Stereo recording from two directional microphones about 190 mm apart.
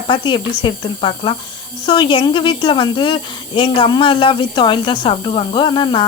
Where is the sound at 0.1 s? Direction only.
25° left (ahead or behind).